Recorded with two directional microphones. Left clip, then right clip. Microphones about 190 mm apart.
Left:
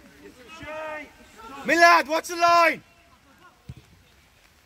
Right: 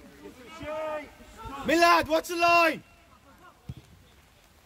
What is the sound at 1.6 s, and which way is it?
A man's voice, 40° left (ahead or behind).